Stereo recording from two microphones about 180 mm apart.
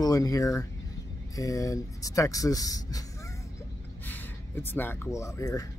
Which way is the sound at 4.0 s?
10° left (ahead or behind).